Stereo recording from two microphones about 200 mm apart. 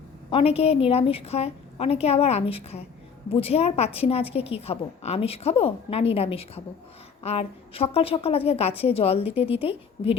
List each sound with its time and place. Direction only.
0.3 s a woman's voice: 30° left (ahead or behind)